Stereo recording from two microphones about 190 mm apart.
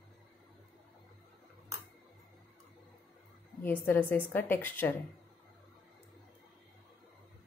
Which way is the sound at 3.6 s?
10° left (ahead or behind).